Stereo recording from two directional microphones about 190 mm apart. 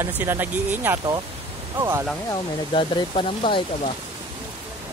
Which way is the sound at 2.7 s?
25° left (ahead or behind).